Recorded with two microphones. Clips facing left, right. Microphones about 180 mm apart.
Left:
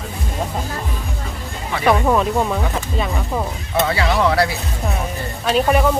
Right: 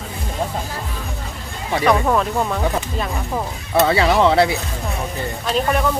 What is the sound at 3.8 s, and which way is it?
Speech, 25° right (ahead or behind).